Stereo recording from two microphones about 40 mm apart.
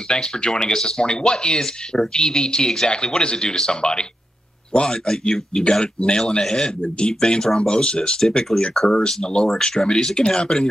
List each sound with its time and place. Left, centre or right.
0.1 s speech: centre